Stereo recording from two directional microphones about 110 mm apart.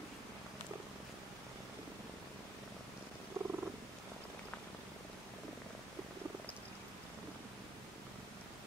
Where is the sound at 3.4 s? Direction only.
25° right (ahead or behind).